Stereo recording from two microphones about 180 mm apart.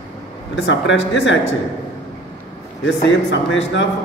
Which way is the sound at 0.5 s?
90° left.